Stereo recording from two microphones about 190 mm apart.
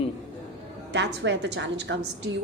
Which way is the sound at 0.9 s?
70° right (ahead or behind).